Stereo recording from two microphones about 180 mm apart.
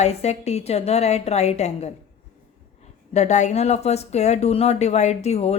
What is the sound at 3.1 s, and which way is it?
A woman's voice, 40° left (ahead or behind).